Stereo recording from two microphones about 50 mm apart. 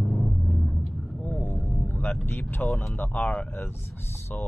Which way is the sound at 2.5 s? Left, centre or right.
Left.